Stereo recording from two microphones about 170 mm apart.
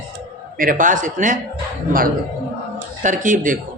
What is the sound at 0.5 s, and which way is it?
Speech, 55° right (ahead or behind).